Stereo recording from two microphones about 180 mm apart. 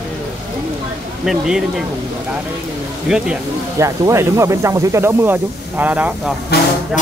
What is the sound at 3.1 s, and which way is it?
Speech, centre (ahead or behind).